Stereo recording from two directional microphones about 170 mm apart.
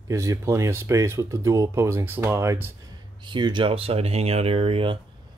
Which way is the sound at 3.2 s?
25° right (ahead or behind).